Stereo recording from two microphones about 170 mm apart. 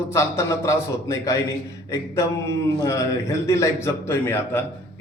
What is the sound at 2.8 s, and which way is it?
A man's voice, 20° left (ahead or behind).